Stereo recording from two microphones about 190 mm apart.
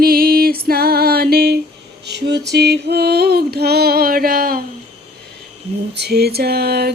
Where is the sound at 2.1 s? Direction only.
65° right (ahead or behind).